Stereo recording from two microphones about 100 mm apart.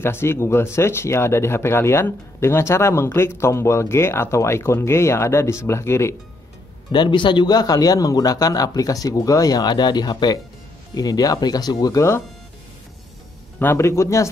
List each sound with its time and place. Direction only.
0.0 s speech: 25° left (ahead or behind)
6.9 s a man's voice: 50° left (ahead or behind); by 12.2 s 30° left (ahead or behind)
13.6 s speech: 25° left (ahead or behind)